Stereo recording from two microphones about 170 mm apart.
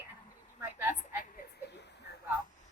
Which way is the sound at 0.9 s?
50° left (ahead or behind).